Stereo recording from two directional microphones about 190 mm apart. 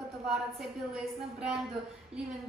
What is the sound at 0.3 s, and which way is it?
Speech, centre (ahead or behind).